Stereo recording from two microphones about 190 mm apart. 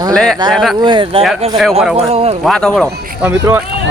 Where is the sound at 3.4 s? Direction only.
15° right (ahead or behind).